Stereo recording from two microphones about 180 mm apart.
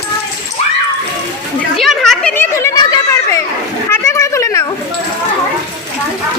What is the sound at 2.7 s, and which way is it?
Chatter, 20° left (ahead or behind).